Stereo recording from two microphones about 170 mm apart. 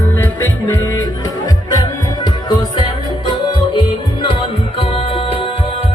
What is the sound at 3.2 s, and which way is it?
Music, 30° left (ahead or behind).